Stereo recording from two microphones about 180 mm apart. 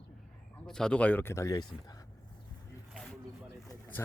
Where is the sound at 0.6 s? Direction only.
5° left (ahead or behind); by 2.0 s 20° left (ahead or behind).